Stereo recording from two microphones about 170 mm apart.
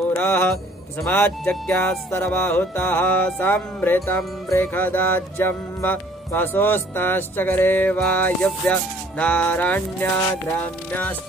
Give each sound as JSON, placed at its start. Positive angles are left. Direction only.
{"t": 0.1, "sound": "music", "side_deg": 10}
{"t": 1.0, "sound": "speech", "side_deg": 10}